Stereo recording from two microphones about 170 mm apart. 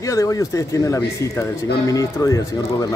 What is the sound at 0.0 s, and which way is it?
Speech, 20° left (ahead or behind).